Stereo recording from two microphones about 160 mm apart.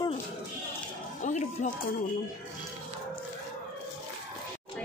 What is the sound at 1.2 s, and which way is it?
Speech, 50° left (ahead or behind).